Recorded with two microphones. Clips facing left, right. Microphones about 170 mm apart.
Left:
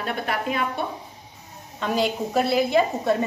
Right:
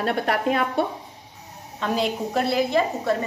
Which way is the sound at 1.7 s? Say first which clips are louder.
Left 1 dB; centre (ahead or behind).